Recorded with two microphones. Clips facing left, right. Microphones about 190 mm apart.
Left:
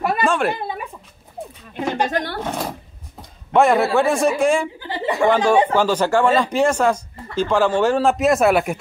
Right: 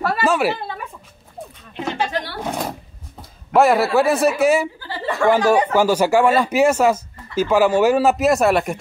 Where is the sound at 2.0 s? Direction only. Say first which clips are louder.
Left 2 dB; 50° left (ahead or behind).